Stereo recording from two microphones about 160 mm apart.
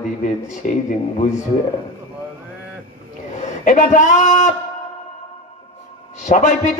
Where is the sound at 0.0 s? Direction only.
50° left (ahead or behind).